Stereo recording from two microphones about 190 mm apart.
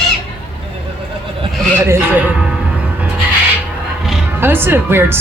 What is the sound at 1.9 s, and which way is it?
Music, 10° right (ahead or behind).